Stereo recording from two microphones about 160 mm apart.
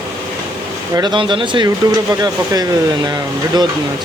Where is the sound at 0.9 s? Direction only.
30° right (ahead or behind).